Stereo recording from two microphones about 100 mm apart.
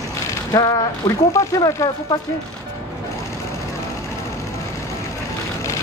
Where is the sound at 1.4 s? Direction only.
30° left (ahead or behind).